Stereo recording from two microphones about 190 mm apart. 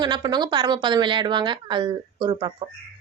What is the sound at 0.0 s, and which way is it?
A woman's voice, 20° right (ahead or behind).